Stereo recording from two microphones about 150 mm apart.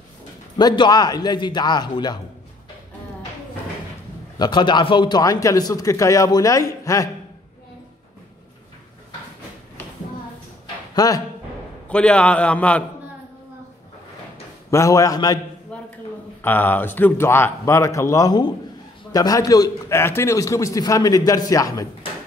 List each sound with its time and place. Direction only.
0.6 s a man's voice: 30° left (ahead or behind)
4.4 s a man's voice: 30° left (ahead or behind)
11.0 s a man's voice: 25° left (ahead or behind)
11.9 s speech: 5° left (ahead or behind)
14.7 s a man's voice: 20° left (ahead or behind)
15.7 s a sound: 5° left (ahead or behind)
16.3 s a man's voice: 15° left (ahead or behind)